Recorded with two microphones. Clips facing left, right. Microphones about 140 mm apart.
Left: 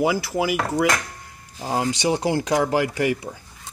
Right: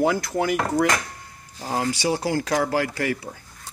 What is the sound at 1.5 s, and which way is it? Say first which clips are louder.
Speech: left 2 dB; 15° left (ahead or behind).